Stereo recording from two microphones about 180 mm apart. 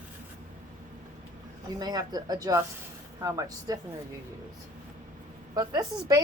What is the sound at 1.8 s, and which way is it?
Speech, 20° right (ahead or behind).